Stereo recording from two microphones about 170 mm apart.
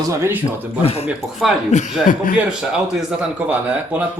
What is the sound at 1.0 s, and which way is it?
Speech, centre (ahead or behind).